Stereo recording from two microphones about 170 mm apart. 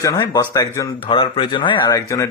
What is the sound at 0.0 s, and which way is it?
Speech, 20° left (ahead or behind).